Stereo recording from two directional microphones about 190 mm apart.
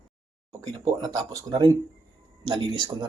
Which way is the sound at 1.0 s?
20° right (ahead or behind).